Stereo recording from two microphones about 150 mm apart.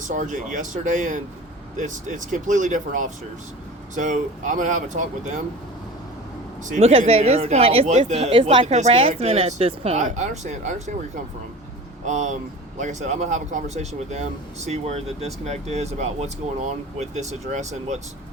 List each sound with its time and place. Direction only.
0.0 s speech: 60° right (ahead or behind)
6.7 s speech: 50° right (ahead or behind)
9.0 s speech: 40° right (ahead or behind)
12.0 s speech: 55° right (ahead or behind)